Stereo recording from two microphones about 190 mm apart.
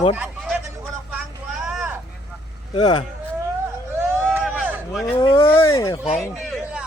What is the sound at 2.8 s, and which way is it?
Speech, 20° left (ahead or behind).